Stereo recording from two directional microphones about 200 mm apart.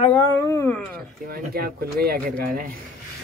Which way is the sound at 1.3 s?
50° right (ahead or behind).